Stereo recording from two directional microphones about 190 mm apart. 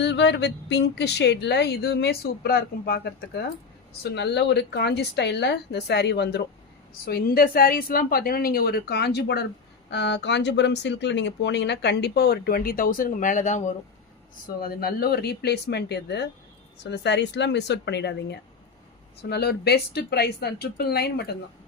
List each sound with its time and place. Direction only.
0.0 s a woman's voice: 65° left (ahead or behind); by 13.7 s 40° left (ahead or behind)
14.6 s speech: 55° left (ahead or behind)